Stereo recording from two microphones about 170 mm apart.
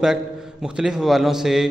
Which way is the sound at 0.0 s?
5° right (ahead or behind).